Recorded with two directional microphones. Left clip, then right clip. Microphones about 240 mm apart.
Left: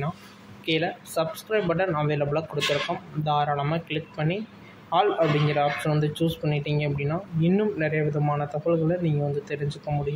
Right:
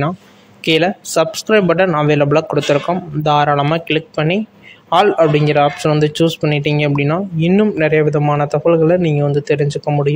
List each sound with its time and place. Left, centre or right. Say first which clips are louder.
0.7 s a man's voice: right 12 dB; right